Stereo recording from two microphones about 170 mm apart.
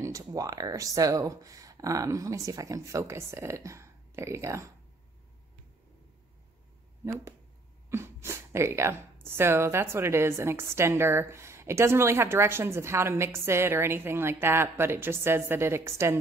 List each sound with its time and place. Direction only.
0.0 s speech: 20° right (ahead or behind)
7.9 s a woman's voice: 15° right (ahead or behind)